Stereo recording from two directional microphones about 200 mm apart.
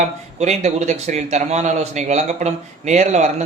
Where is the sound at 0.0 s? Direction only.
35° right (ahead or behind).